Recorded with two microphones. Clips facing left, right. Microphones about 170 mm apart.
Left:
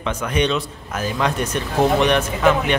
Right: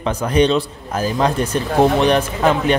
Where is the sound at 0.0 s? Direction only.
35° right (ahead or behind).